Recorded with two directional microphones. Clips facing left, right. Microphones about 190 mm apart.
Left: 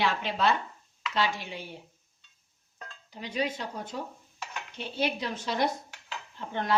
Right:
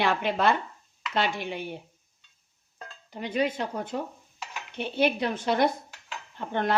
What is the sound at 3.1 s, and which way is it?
Speech, 55° right (ahead or behind).